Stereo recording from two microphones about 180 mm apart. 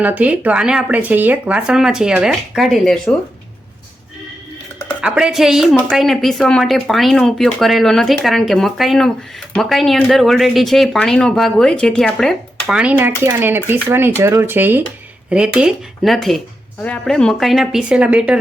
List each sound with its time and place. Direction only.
0.0 s speech: 10° right (ahead or behind)
4.9 s speech: 5° right (ahead or behind)